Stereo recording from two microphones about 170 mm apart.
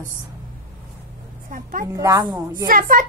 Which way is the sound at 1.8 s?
20° right (ahead or behind).